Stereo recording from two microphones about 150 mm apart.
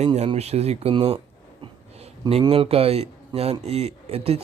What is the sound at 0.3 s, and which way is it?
Speech, 45° right (ahead or behind).